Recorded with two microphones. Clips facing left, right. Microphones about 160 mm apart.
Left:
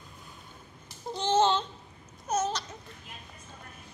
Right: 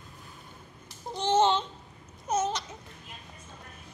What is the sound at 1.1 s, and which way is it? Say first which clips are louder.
Babbling: right 1 dB; 15° right (ahead or behind).